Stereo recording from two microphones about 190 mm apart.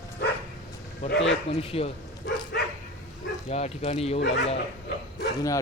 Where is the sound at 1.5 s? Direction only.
30° left (ahead or behind).